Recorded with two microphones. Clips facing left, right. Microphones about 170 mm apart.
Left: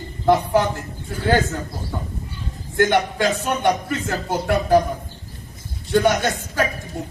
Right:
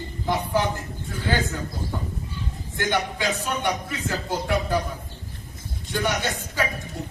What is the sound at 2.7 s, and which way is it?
A man's voice, 55° left (ahead or behind).